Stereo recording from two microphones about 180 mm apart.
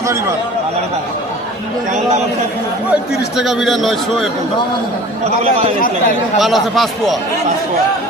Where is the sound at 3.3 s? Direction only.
Centre (ahead or behind).